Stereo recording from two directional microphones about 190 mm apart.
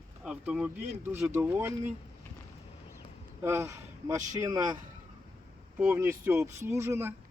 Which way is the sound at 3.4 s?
15° right (ahead or behind).